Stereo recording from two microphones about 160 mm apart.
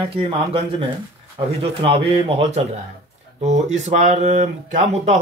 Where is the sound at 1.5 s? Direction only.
35° right (ahead or behind).